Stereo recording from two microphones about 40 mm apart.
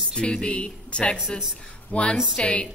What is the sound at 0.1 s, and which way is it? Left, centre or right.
A woman's voice, left.